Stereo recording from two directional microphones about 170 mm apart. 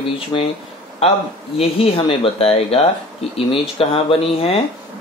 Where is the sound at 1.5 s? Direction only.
35° left (ahead or behind).